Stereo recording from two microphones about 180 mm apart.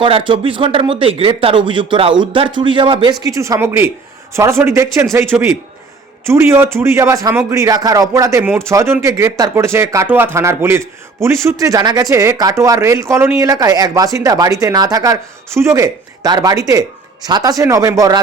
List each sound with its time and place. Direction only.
0.0 s a man's voice: 30° right (ahead or behind)